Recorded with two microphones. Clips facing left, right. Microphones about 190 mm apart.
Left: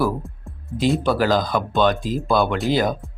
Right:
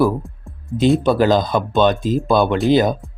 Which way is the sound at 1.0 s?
20° right (ahead or behind).